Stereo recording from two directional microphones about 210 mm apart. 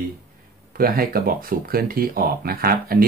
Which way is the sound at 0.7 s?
45° right (ahead or behind).